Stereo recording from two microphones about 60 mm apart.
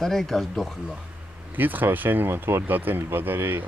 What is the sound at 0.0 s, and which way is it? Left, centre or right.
Speech, centre.